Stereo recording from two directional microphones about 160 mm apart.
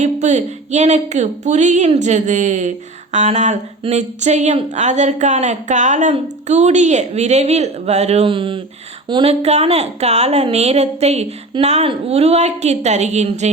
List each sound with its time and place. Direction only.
0.0 s speech: 50° right (ahead or behind); by 9.3 s 30° right (ahead or behind)
9.4 s a woman's voice: 40° right (ahead or behind)